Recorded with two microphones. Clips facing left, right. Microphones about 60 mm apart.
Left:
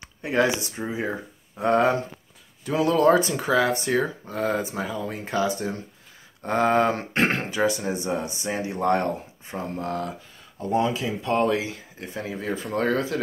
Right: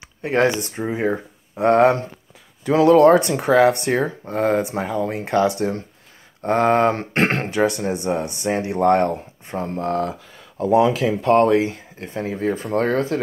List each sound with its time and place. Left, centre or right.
0.2 s speech: right
1.6 s speech: right
4.3 s speech: right
4.6 s speech: right
6.4 s speech: right
10.7 s speech: right
11.1 s speech: right
11.4 s speech: right